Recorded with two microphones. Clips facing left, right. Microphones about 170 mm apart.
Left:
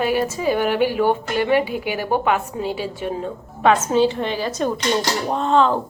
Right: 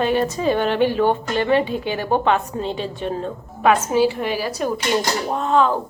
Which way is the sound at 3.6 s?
10° right (ahead or behind).